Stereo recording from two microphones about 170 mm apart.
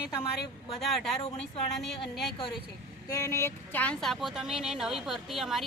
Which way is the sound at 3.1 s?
15° left (ahead or behind).